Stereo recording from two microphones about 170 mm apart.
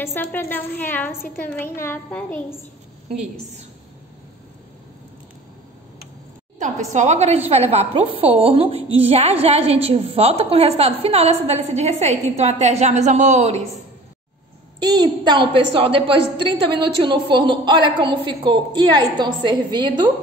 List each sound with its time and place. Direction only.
0.0 s a woman's voice: 15° left (ahead or behind)
6.6 s a woman's voice: 45° right (ahead or behind)
14.8 s a woman's voice: 25° right (ahead or behind)